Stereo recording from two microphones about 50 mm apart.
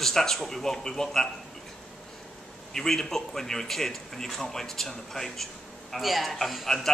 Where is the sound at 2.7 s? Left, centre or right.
Centre.